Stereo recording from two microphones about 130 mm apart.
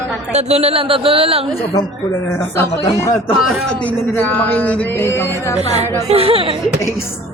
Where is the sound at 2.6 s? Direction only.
20° left (ahead or behind).